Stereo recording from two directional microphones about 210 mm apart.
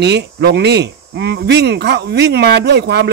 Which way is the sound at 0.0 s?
50° right (ahead or behind).